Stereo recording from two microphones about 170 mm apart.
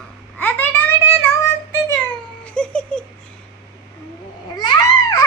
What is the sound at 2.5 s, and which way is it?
Giggle, 5° left (ahead or behind).